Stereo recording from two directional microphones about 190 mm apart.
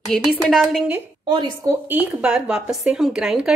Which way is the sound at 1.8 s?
10° right (ahead or behind).